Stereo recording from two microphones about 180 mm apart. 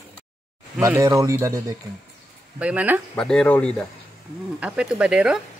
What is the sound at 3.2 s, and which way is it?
Speech, 5° left (ahead or behind).